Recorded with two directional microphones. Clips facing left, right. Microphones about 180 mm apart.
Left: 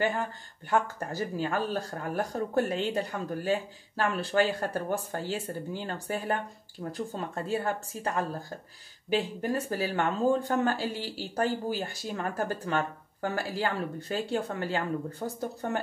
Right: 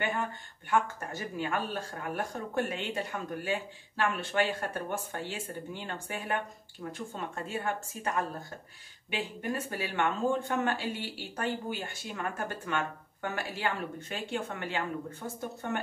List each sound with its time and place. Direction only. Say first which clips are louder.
0.7 s speech: left 2 dB; 35° left (ahead or behind)